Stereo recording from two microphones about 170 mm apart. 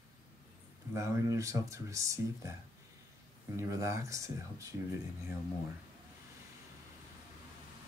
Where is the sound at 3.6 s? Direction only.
15° right (ahead or behind).